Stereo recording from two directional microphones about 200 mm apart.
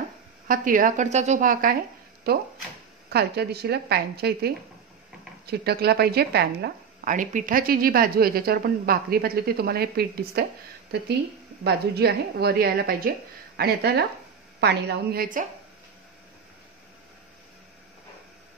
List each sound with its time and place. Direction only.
0.5 s a woman's voice: 40° right (ahead or behind)
11.6 s a woman's voice: 55° right (ahead or behind)